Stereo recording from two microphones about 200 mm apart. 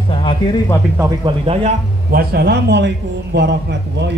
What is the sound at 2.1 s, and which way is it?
A man's voice, 50° right (ahead or behind).